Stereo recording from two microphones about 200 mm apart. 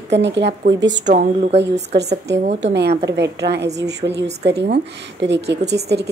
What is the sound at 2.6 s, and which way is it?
A woman's voice, 60° right (ahead or behind).